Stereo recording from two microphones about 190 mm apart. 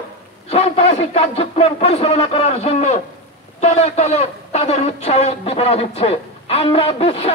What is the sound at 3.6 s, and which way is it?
Speech, 35° left (ahead or behind).